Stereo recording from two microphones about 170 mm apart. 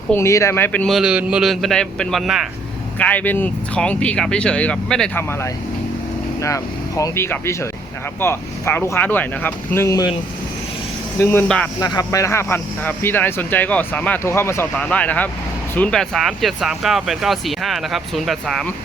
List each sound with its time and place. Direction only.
0.1 s speech: 15° left (ahead or behind); by 2.5 s centre (ahead or behind)
3.0 s speech: 10° left (ahead or behind)
11.2 s speech: 10° left (ahead or behind)
11.8 s speech: 20° left (ahead or behind); by 18.7 s centre (ahead or behind)